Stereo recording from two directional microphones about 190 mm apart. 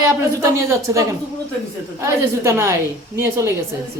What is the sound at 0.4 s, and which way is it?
A woman's voice, 15° right (ahead or behind).